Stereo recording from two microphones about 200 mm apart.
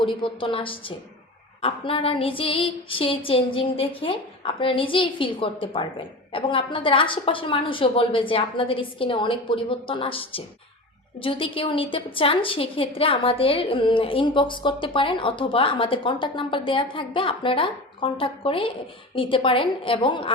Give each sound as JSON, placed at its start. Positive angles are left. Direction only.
{"t": 0.0, "sound": "a woman's voice", "side_deg": 25}